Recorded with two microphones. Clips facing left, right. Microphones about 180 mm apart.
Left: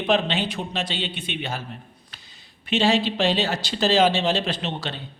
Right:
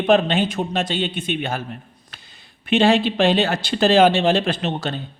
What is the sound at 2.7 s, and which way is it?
A man's voice, 55° right (ahead or behind).